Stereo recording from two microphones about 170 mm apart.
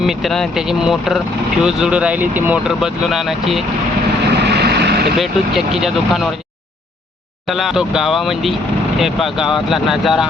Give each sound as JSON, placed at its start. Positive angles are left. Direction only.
{"t": 0.0, "sound": "speech", "side_deg": 0}
{"t": 4.4, "sound": "vehicle", "side_deg": -75}
{"t": 5.1, "sound": "speech", "side_deg": 0}
{"t": 7.4, "sound": "speech", "side_deg": 0}